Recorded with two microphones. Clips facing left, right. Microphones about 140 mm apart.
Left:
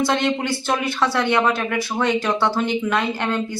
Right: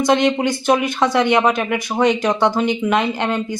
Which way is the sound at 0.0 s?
20° right (ahead or behind).